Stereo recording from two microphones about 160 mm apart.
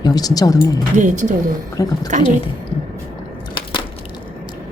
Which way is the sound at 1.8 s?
20° left (ahead or behind).